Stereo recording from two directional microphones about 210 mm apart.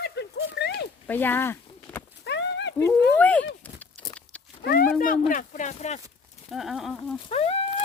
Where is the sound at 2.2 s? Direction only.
55° left (ahead or behind).